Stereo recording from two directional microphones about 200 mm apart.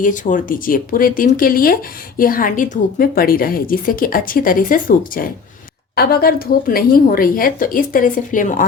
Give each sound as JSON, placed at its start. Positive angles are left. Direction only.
{"t": 0.0, "sound": "speech", "side_deg": 40}